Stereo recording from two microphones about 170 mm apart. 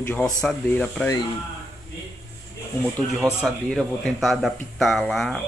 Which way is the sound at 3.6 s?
Centre (ahead or behind).